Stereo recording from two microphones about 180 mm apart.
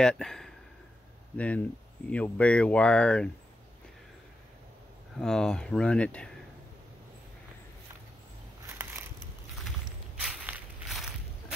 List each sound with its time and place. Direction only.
0.0 s speech: 5° left (ahead or behind)
5.2 s speech: 5° left (ahead or behind)
9.7 s walk: 5° right (ahead or behind)